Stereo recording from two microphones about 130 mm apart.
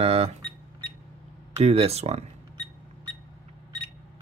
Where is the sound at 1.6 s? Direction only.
50° right (ahead or behind).